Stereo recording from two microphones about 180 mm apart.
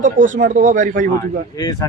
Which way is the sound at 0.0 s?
45° right (ahead or behind).